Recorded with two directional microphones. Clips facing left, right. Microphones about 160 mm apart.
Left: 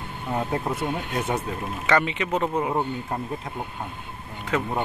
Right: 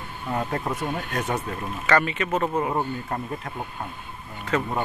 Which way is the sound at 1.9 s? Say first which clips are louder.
Even; 15° left (ahead or behind).